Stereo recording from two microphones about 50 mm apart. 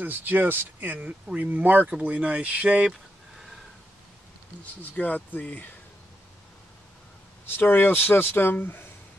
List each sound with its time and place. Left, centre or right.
0.0 s speech: right
0.9 s speech: right
4.9 s speech: left
7.4 s speech: left